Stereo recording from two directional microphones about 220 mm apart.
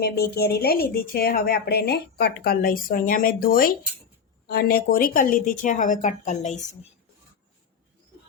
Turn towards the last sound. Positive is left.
turn(degrees=30)  # may be behind; listen again after turning